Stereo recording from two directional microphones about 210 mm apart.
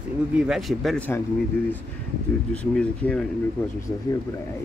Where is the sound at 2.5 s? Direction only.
5° left (ahead or behind).